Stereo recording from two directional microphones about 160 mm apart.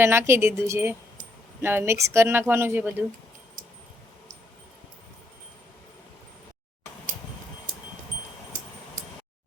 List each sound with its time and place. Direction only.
0.0 s speech: 15° right (ahead or behind)